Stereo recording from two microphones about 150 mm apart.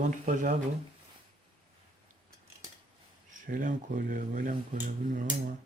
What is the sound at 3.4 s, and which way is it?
Speech, 65° right (ahead or behind).